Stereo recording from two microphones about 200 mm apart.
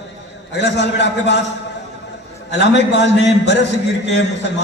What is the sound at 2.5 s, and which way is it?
A man's voice, 60° left (ahead or behind).